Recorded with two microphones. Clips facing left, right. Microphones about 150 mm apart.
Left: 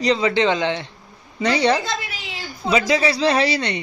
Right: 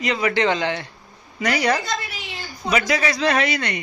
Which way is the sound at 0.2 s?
20° left (ahead or behind).